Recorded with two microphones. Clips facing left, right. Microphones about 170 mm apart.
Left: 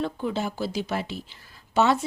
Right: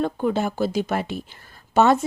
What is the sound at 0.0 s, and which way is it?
Speech, 50° right (ahead or behind).